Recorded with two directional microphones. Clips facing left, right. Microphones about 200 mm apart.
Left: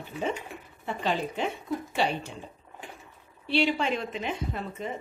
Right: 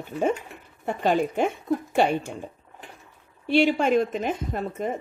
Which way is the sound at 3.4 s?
45° right (ahead or behind).